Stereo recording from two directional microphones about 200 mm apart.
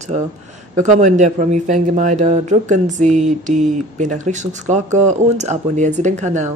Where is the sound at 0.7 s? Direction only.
35° right (ahead or behind).